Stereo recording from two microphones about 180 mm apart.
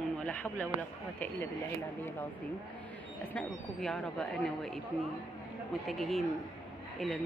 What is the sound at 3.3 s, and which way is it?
Speech, centre (ahead or behind).